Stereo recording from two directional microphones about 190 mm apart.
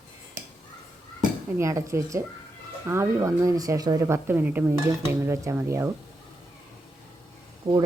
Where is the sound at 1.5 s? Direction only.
15° right (ahead or behind).